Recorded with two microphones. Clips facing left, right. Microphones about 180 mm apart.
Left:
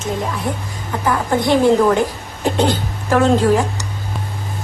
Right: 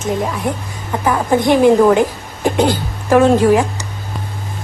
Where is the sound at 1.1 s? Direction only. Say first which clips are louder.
Right 3 dB; 15° right (ahead or behind).